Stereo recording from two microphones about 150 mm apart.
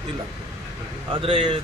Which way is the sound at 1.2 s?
40° right (ahead or behind).